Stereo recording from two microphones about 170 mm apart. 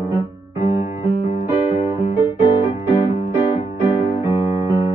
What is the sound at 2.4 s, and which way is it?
Music, 30° left (ahead or behind).